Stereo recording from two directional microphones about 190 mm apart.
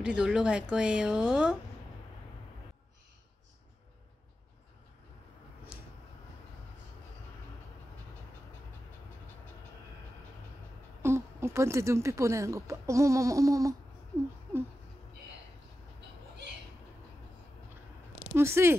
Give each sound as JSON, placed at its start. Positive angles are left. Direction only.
{"t": 0.0, "sound": "a woman's voice", "side_deg": -5}
{"t": 5.7, "sound": "a sound", "side_deg": -5}
{"t": 11.0, "sound": "speech", "side_deg": -15}
{"t": 18.3, "sound": "speech", "side_deg": -15}